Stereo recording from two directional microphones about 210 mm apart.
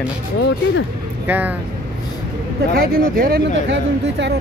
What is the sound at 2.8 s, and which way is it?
Speech, 45° right (ahead or behind).